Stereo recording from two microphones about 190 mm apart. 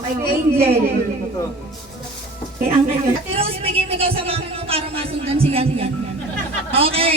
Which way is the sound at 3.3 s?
30° right (ahead or behind).